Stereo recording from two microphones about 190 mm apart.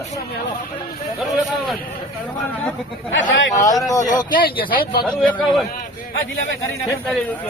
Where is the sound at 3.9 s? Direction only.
20° left (ahead or behind).